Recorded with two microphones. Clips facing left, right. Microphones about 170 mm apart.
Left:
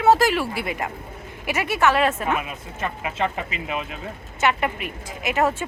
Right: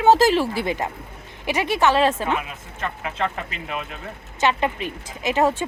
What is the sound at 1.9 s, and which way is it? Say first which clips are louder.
Speech: right 2 dB; 30° right (ahead or behind).